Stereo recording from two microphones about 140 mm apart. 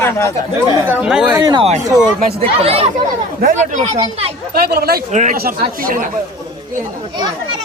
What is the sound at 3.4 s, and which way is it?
Speech, 60° right (ahead or behind).